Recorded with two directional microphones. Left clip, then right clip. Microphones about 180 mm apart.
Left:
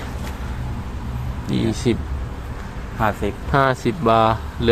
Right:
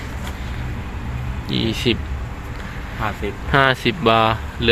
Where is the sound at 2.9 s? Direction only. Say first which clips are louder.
Left 4 dB; 55° left (ahead or behind).